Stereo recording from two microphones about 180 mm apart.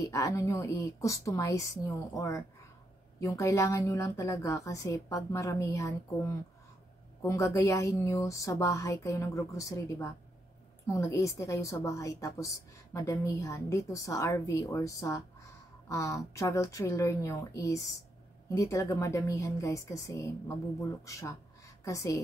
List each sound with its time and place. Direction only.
0.0 s a woman's voice: 20° left (ahead or behind)